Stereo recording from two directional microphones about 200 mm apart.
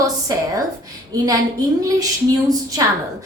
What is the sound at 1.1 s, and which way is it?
Speech, 15° right (ahead or behind).